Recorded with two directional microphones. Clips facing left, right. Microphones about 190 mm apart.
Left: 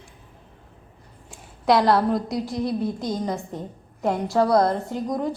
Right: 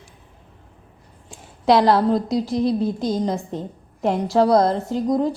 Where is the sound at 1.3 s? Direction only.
25° right (ahead or behind).